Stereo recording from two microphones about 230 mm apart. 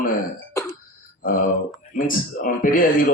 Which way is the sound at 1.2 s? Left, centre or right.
Left.